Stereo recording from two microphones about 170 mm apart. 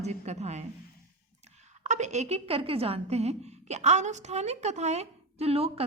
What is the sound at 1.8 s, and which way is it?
A woman's voice, 45° right (ahead or behind).